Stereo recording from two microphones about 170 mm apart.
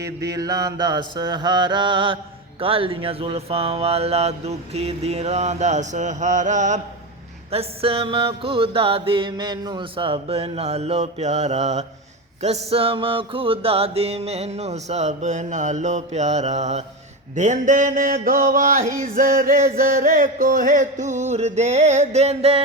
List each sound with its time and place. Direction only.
0.0 s mantra: 20° right (ahead or behind); by 6.8 s 45° right (ahead or behind)
7.5 s mantra: 35° right (ahead or behind)
17.3 s music: 45° right (ahead or behind)